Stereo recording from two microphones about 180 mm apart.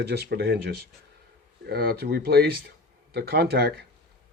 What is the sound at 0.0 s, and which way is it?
Speech, 65° right (ahead or behind).